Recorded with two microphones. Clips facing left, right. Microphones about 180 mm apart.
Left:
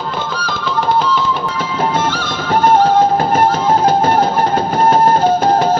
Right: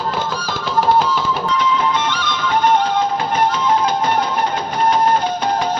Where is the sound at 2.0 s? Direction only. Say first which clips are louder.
Left 3 dB; 45° left (ahead or behind).